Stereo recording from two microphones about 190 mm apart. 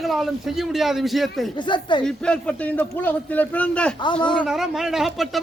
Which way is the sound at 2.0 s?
5° left (ahead or behind).